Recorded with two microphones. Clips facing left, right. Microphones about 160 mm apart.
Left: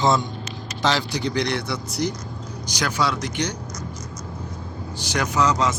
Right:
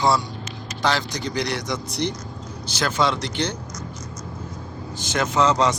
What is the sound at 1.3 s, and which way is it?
Speech, 10° right (ahead or behind).